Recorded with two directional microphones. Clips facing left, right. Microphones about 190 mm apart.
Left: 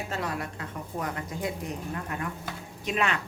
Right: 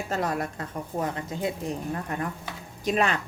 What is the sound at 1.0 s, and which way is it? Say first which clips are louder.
A woman's voice: right 3 dB; 25° right (ahead or behind).